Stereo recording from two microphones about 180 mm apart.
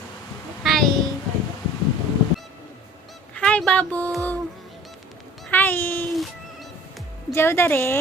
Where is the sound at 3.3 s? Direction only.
5° left (ahead or behind).